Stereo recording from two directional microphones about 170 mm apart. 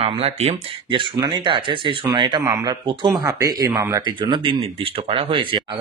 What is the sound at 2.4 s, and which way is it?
Speech, 15° right (ahead or behind).